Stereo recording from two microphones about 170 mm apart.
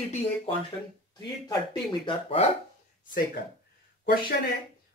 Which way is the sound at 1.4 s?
25° left (ahead or behind).